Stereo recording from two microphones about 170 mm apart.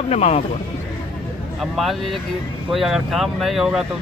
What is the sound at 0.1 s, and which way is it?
Speech, 40° left (ahead or behind).